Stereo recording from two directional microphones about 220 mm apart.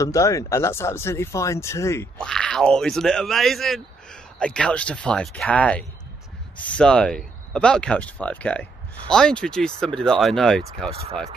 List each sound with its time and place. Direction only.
0.0 s speech: 15° left (ahead or behind)
10.9 s speech: 25° right (ahead or behind)